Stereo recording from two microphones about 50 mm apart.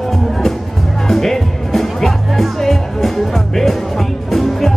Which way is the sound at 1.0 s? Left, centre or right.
Centre.